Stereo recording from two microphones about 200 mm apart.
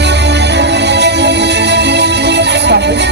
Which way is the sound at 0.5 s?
60° right (ahead or behind).